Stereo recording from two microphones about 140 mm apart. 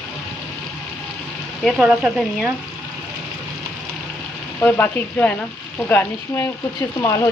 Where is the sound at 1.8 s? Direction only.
Centre (ahead or behind).